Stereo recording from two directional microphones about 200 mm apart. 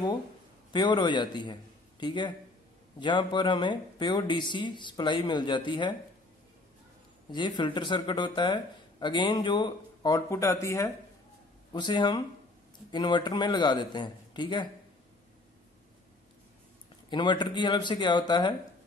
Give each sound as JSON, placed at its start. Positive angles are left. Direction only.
{"t": 0.7, "sound": "a man's voice", "side_deg": 20}
{"t": 7.2, "sound": "speech", "side_deg": 20}
{"t": 17.1, "sound": "speech", "side_deg": 20}